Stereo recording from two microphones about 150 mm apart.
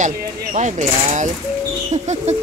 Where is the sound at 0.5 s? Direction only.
55° right (ahead or behind).